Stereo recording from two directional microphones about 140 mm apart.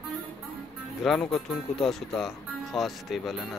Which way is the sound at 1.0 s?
5° left (ahead or behind).